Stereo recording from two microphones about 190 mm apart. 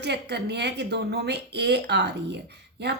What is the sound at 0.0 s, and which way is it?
A woman's voice, 60° right (ahead or behind).